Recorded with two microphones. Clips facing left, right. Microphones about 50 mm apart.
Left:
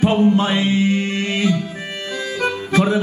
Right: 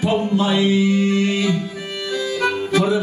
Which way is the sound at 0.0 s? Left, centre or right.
Left.